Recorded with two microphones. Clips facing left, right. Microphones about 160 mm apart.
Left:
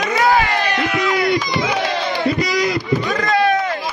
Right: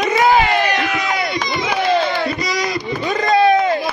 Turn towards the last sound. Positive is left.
turn(degrees=-20)  # may be behind; listen again after turning